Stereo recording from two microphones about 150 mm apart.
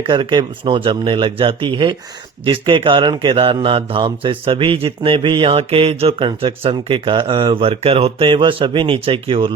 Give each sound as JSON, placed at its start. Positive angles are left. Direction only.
{"t": 0.1, "sound": "speech", "side_deg": -30}